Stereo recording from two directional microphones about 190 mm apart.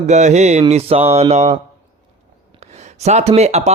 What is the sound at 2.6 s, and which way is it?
Speech, 35° right (ahead or behind).